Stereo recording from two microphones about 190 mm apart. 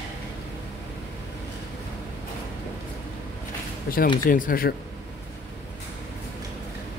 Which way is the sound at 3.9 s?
50° left (ahead or behind).